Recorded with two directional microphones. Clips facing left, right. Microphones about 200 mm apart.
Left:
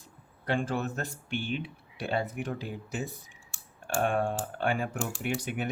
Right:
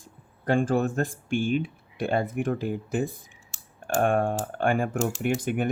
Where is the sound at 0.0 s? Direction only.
50° right (ahead or behind).